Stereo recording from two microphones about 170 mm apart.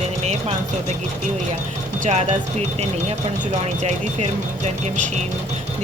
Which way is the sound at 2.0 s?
40° right (ahead or behind).